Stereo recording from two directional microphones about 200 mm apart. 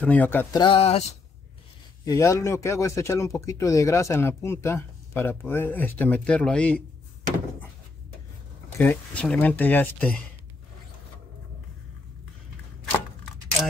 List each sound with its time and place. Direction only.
0.0 s speech: 10° left (ahead or behind)
0.6 s speech: 25° left (ahead or behind)
2.0 s speech: 15° left (ahead or behind)
8.7 s speech: 10° left (ahead or behind)